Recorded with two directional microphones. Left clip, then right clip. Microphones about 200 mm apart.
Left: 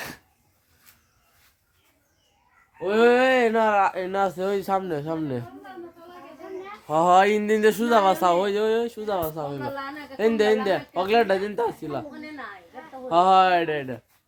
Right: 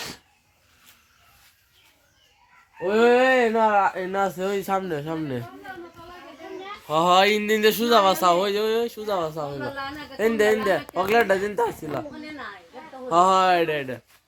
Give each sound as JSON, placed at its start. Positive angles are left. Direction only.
{"t": 2.7, "sound": "speech", "side_deg": -15}
{"t": 6.8, "sound": "speech", "side_deg": 25}
{"t": 13.1, "sound": "speech", "side_deg": 30}